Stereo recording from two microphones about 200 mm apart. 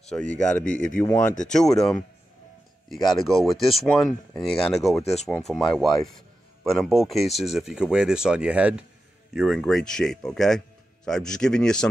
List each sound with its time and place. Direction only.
0.4 s speech: 5° left (ahead or behind)
5.0 s speech: 35° left (ahead or behind)
5.5 s speech: centre (ahead or behind)